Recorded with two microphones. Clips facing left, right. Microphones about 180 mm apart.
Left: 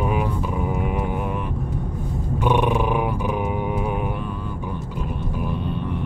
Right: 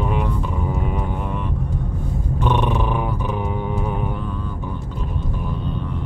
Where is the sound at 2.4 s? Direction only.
10° left (ahead or behind).